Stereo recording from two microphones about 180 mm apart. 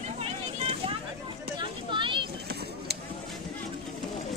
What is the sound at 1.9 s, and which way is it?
Vehicle, 25° right (ahead or behind).